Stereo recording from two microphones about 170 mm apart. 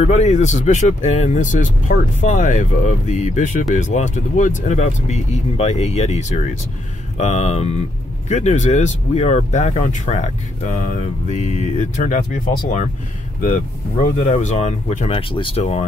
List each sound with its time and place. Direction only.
0.0 s speech: 40° left (ahead or behind)
14.0 s speech: 45° left (ahead or behind)